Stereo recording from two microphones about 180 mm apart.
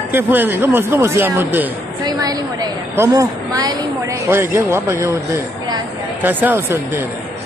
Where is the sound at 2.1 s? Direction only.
20° right (ahead or behind).